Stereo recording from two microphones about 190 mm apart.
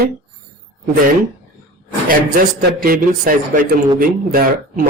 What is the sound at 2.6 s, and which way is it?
Speech, 50° right (ahead or behind).